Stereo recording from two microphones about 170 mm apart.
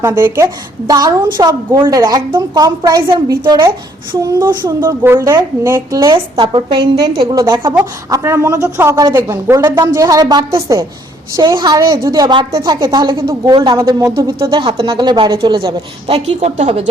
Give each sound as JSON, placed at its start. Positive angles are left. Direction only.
{"t": 0.0, "sound": "a woman's voice", "side_deg": -15}